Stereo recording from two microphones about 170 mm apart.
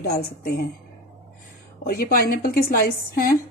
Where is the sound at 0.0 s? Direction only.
65° left (ahead or behind).